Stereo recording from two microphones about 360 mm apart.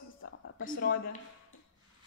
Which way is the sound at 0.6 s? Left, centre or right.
Left.